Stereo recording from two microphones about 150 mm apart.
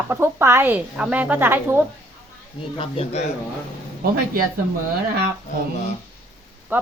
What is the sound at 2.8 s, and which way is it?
Speech, 40° left (ahead or behind).